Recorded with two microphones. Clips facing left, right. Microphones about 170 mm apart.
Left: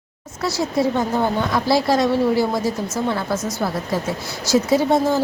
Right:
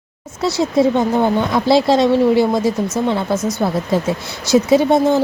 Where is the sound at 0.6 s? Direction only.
20° right (ahead or behind).